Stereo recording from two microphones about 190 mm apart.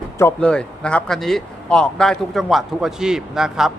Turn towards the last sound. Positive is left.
turn(degrees=0)  # may be behind; listen again after turning